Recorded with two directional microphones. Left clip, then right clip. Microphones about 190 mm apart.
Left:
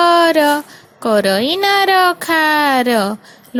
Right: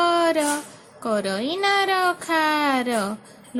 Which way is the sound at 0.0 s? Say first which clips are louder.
Left 9 dB; 35° left (ahead or behind).